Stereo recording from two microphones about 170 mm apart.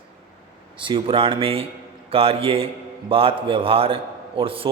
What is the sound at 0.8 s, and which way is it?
A man's voice, 30° right (ahead or behind).